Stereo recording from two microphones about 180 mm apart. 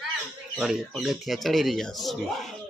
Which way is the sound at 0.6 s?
5° right (ahead or behind).